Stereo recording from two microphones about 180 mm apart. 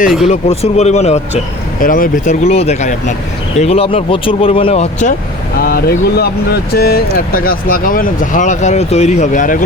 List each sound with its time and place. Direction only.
0.3 s speech: 40° left (ahead or behind)
1.8 s speech: 50° left (ahead or behind)
5.5 s speech: 60° left (ahead or behind)